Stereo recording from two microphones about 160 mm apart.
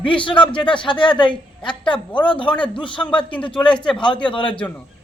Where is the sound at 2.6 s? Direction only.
30° left (ahead or behind).